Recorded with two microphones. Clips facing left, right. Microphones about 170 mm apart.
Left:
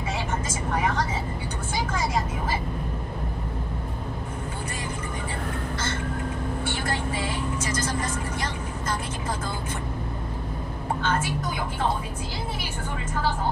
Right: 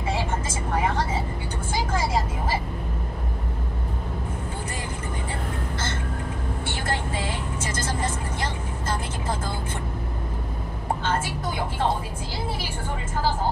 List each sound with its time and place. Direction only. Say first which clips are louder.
0.1 s vehicle: right 3 dB; 30° right (ahead or behind)
7.7 s vehicle: right 3 dB; 30° right (ahead or behind)
11.0 s a sound: left 1 dB; 30° right (ahead or behind)